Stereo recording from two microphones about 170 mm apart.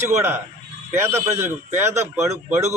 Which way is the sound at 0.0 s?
15° right (ahead or behind).